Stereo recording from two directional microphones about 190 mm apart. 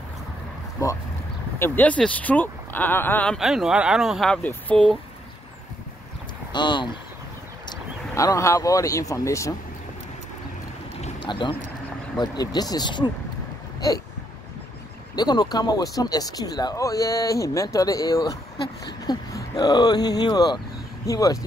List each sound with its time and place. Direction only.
0.8 s speech: 20° left (ahead or behind)
6.5 s speech: 25° left (ahead or behind)
11.1 s speech: 25° left (ahead or behind)
13.7 s hiccup: 20° left (ahead or behind)
15.1 s speech: 20° left (ahead or behind)